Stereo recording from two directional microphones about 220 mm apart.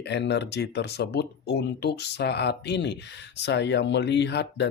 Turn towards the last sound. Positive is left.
turn(degrees=50)  # may be behind; listen again after turning